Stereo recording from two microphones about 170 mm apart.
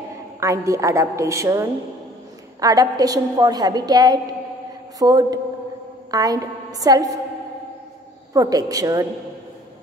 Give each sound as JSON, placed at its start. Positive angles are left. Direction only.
{"t": 0.4, "sound": "a woman's voice", "side_deg": -20}
{"t": 8.3, "sound": "a woman's voice", "side_deg": -20}